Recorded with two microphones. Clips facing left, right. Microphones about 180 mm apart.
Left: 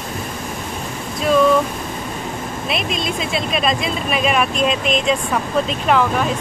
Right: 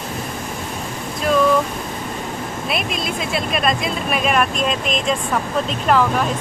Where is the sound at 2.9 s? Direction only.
Centre (ahead or behind).